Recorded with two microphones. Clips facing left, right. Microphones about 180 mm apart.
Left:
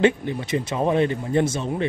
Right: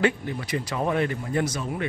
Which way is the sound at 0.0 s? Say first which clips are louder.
Left 5 dB; 25° left (ahead or behind).